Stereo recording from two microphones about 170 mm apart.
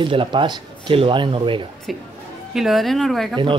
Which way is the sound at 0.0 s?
30° right (ahead or behind).